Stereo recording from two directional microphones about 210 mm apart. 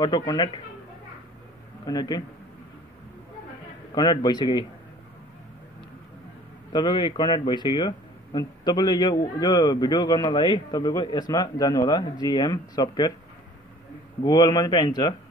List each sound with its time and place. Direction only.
0.0 s a man's voice: 20° left (ahead or behind)
1.9 s a man's voice: 20° left (ahead or behind)
3.9 s a man's voice: 20° left (ahead or behind)
6.7 s a man's voice: 20° left (ahead or behind)
14.2 s a man's voice: 20° left (ahead or behind)